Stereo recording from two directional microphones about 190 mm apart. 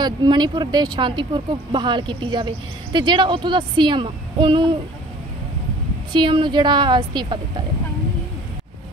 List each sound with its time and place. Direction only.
0.0 s speech: 20° right (ahead or behind)
6.1 s speech: 25° right (ahead or behind)